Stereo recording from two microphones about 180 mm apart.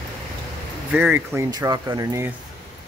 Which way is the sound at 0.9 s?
10° right (ahead or behind).